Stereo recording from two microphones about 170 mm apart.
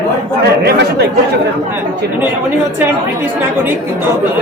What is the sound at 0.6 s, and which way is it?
Speech, 75° right (ahead or behind).